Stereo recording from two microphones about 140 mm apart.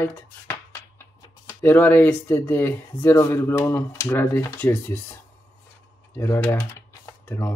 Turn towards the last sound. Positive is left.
turn(degrees=15)  # may be behind; listen again after turning